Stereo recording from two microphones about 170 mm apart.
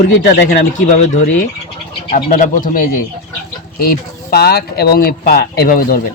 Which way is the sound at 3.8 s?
65° left (ahead or behind).